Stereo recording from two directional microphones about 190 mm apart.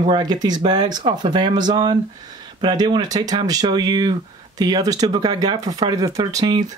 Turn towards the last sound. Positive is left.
turn(degrees=-20)  # may be behind; listen again after turning